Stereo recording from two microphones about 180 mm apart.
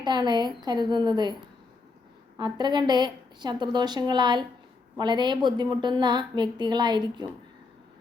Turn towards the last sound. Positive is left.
turn(degrees=-25)  # may be behind; listen again after turning